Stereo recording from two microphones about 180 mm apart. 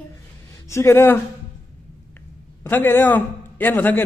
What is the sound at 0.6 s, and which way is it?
Speech, 15° left (ahead or behind).